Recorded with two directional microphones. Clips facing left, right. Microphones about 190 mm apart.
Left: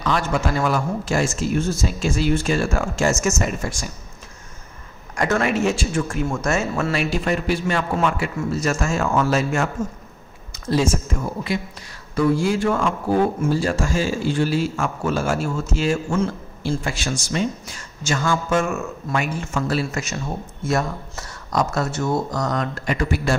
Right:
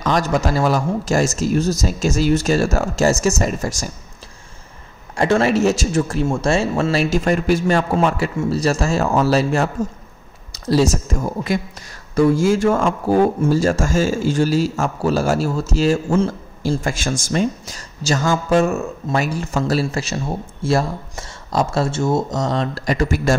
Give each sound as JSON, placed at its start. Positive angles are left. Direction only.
{"t": 0.0, "sound": "speech", "side_deg": -40}
{"t": 5.1, "sound": "speech", "side_deg": -30}